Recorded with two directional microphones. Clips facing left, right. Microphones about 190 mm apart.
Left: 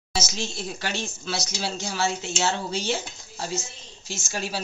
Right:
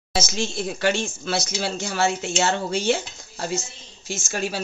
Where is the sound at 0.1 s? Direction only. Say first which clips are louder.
Right 4 dB; 55° right (ahead or behind).